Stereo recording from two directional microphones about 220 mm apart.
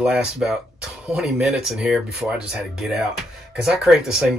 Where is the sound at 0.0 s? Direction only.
Centre (ahead or behind).